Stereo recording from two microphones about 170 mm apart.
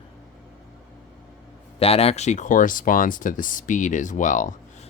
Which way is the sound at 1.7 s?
35° left (ahead or behind).